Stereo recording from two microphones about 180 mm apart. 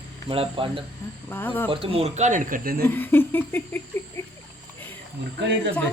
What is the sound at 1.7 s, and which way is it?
Speech, 30° right (ahead or behind).